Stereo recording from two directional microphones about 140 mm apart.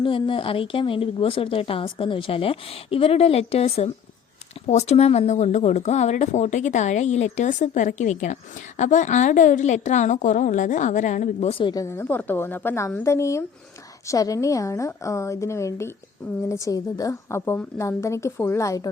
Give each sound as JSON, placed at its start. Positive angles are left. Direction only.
{"t": 0.0, "sound": "a woman's voice", "side_deg": 40}
{"t": 11.6, "sound": "a woman's voice", "side_deg": 25}